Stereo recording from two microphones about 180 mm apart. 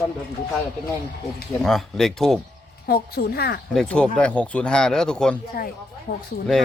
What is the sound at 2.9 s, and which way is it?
Speech, 60° left (ahead or behind).